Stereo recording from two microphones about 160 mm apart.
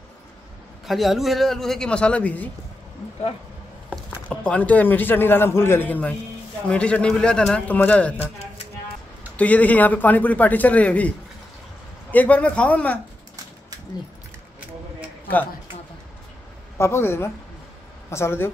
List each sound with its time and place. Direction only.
0.8 s a man's voice: centre (ahead or behind)
3.9 s speech: 5° left (ahead or behind)
9.4 s speech: 10° left (ahead or behind)
16.7 s speech: 15° left (ahead or behind)